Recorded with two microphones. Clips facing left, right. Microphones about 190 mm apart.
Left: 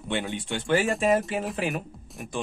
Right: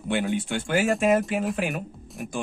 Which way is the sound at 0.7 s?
Centre (ahead or behind).